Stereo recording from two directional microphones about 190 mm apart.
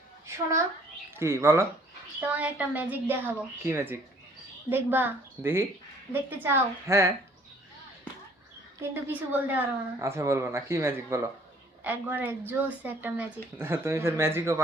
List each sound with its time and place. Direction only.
0.3 s a woman's voice: 15° right (ahead or behind)
8.8 s a woman's voice: 10° right (ahead or behind)